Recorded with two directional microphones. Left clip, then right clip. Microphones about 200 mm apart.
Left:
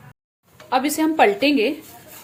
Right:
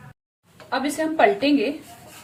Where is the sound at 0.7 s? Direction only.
35° left (ahead or behind).